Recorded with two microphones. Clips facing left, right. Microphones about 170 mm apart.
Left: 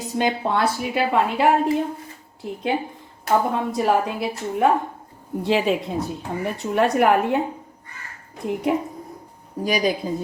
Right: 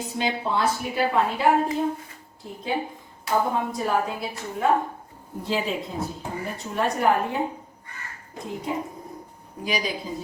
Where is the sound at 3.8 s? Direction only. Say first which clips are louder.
Left 7 dB; 75° left (ahead or behind).